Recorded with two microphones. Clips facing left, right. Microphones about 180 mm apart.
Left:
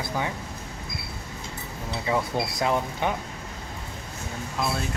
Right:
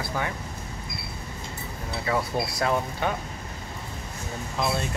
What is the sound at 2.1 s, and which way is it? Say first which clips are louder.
Speech: left 1 dB; 15° left (ahead or behind).